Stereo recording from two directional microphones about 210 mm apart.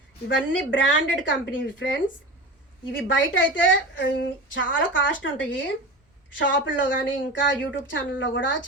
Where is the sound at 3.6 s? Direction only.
60° left (ahead or behind).